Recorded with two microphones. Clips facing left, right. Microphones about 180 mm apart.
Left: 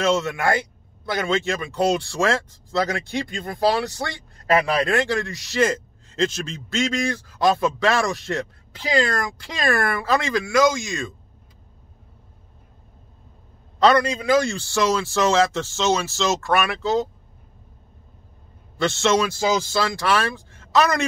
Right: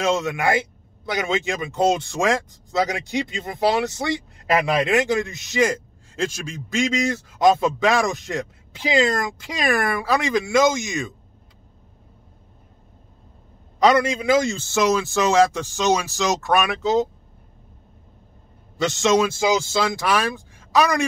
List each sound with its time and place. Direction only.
0.0 s a man's voice: 15° right (ahead or behind)
13.7 s a man's voice: 15° right (ahead or behind)
18.8 s a man's voice: 15° right (ahead or behind)